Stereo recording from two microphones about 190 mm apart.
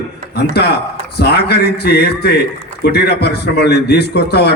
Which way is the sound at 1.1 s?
60° left (ahead or behind).